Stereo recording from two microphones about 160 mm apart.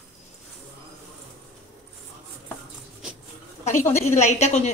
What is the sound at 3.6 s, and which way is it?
Speech, 15° left (ahead or behind).